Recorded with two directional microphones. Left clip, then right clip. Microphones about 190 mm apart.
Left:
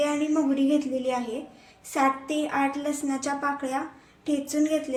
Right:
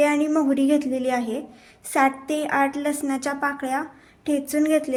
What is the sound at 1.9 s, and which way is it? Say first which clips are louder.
A woman's voice: right 4 dB; 55° right (ahead or behind).